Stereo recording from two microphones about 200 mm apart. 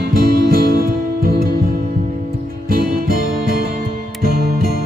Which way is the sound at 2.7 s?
45° right (ahead or behind).